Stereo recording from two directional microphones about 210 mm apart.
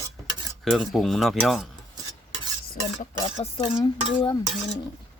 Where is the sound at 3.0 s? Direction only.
35° left (ahead or behind).